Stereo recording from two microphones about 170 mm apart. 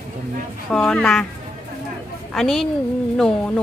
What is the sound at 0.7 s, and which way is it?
Speech, 5° left (ahead or behind).